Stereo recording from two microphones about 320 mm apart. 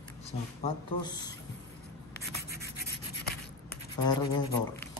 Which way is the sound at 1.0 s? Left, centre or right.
Centre.